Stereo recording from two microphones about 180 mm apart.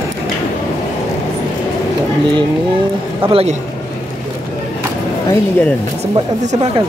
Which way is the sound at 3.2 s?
30° right (ahead or behind).